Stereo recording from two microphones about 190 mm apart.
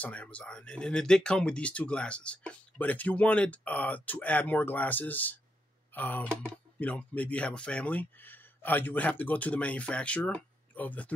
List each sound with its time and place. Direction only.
0.0 s speech: 5° left (ahead or behind)